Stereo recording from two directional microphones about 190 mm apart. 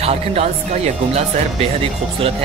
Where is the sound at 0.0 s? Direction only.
35° right (ahead or behind).